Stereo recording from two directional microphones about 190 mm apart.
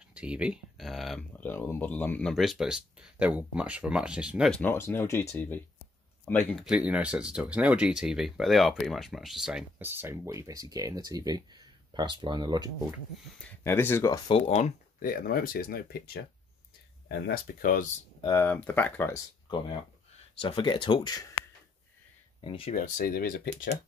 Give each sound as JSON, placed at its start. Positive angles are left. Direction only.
{"t": 0.1, "sound": "speech", "side_deg": -5}
{"t": 6.9, "sound": "speech", "side_deg": -5}
{"t": 13.7, "sound": "speech", "side_deg": 10}
{"t": 14.3, "sound": "speech", "side_deg": 35}
{"t": 15.0, "sound": "speech", "side_deg": 50}
{"t": 18.2, "sound": "speech", "side_deg": 15}
{"t": 20.3, "sound": "speech", "side_deg": 25}
{"t": 22.4, "sound": "speech", "side_deg": 30}
{"t": 22.8, "sound": "speech", "side_deg": 45}